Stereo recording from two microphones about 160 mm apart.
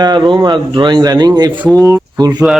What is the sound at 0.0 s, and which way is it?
A man's voice, 25° right (ahead or behind).